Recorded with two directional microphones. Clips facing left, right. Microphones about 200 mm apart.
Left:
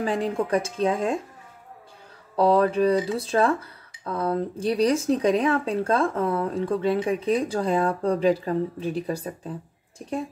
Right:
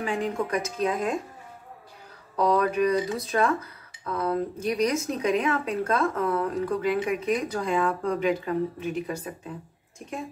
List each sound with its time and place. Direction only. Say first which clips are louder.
0.0 s a woman's voice: left 3 dB; 35° left (ahead or behind)
2.3 s speech: left 4 dB; 30° left (ahead or behind)